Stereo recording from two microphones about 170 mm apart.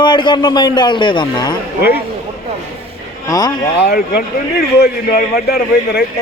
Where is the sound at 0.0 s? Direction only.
25° left (ahead or behind).